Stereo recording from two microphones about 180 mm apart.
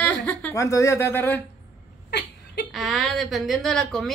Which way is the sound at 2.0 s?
65° left (ahead or behind).